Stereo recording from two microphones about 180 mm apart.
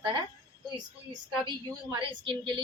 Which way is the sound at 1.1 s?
25° right (ahead or behind).